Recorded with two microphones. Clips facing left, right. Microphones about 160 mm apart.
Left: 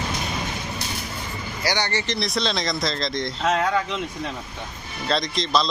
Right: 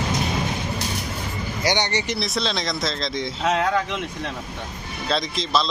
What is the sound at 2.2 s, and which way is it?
Speech, centre (ahead or behind).